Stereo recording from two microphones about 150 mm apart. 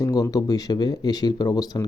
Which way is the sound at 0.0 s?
25° left (ahead or behind).